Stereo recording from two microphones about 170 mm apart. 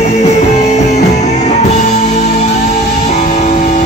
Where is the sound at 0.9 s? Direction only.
45° left (ahead or behind).